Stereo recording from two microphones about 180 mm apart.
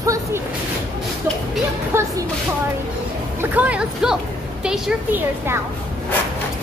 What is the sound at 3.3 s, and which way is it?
Speech, 10° right (ahead or behind).